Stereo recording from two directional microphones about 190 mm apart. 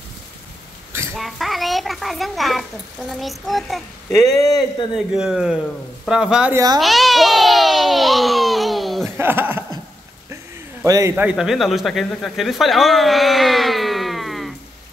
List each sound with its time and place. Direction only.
1.1 s speech: centre (ahead or behind)
6.8 s baby cry: centre (ahead or behind)
9.1 s speech: 10° right (ahead or behind)
10.8 s speech: 15° right (ahead or behind); by 14.5 s centre (ahead or behind)